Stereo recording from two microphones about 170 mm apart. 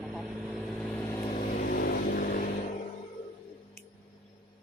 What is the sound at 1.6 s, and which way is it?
Vehicle, 60° left (ahead or behind).